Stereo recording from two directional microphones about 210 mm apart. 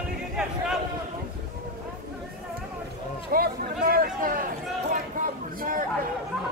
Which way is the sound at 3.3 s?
45° right (ahead or behind).